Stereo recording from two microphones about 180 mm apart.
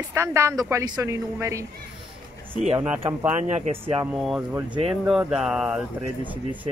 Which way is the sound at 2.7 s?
15° right (ahead or behind).